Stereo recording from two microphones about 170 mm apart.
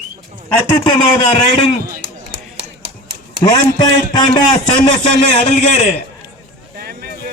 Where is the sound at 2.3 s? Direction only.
35° right (ahead or behind).